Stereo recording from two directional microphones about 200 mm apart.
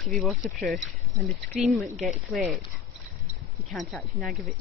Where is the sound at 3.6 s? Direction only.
Centre (ahead or behind).